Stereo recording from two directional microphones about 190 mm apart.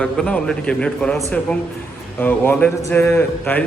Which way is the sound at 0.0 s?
5° left (ahead or behind).